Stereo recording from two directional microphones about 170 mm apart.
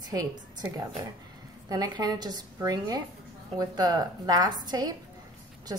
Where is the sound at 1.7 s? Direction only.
25° right (ahead or behind).